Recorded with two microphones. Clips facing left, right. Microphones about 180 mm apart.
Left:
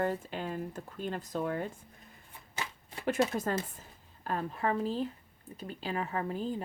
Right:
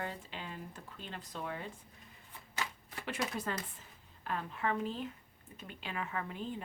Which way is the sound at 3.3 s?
45° left (ahead or behind).